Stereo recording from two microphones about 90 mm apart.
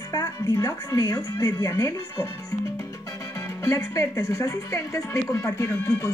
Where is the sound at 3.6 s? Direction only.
35° left (ahead or behind).